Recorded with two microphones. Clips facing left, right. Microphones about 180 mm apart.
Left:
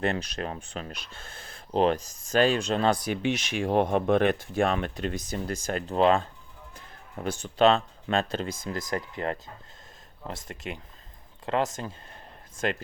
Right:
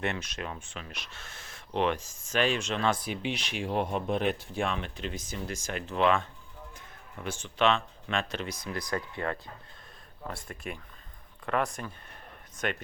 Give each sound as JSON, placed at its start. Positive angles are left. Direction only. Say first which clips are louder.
{"t": 0.0, "sound": "speech", "louder": "left 5 dB", "side_deg": 35}
{"t": 5.3, "sound": "speech", "louder": "left 5 dB", "side_deg": 35}
{"t": 8.4, "sound": "speech", "louder": "left 4 dB", "side_deg": 50}
{"t": 8.7, "sound": "speech", "louder": "even", "side_deg": 20}
{"t": 11.4, "sound": "speech", "louder": "left 3 dB", "side_deg": 25}